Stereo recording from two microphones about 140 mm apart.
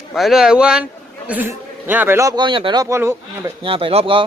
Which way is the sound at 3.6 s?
40° right (ahead or behind).